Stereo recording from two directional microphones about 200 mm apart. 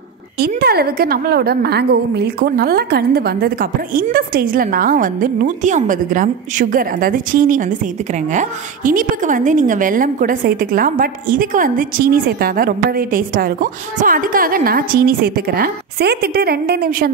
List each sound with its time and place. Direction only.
0.6 s a woman's voice: 50° right (ahead or behind)